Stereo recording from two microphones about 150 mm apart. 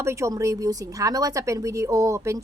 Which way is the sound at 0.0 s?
20° right (ahead or behind).